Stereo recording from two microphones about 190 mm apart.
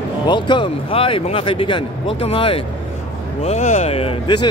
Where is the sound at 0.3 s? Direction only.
25° left (ahead or behind).